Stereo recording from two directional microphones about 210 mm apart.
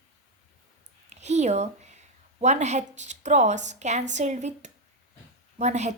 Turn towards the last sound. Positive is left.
turn(degrees=-30)  # may be behind; listen again after turning